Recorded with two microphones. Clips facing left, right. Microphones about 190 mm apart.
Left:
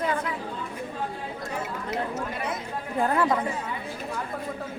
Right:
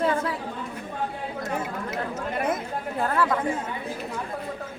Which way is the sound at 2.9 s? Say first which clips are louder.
Left 1 dB; 15° left (ahead or behind).